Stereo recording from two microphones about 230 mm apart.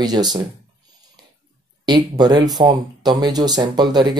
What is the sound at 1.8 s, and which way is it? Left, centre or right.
Speech, centre.